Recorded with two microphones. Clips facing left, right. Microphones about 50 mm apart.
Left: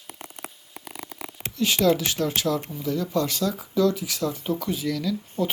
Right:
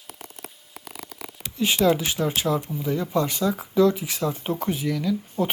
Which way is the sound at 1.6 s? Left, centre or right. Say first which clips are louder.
Right 1 dB; right.